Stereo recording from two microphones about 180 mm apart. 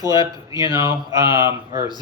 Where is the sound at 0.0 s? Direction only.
20° right (ahead or behind).